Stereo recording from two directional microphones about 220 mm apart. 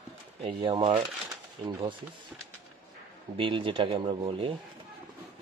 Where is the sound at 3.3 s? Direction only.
25° right (ahead or behind).